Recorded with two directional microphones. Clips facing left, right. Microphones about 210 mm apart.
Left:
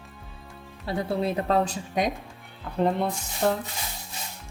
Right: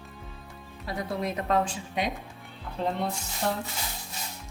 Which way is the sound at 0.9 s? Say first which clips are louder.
Left 5 dB; 30° left (ahead or behind).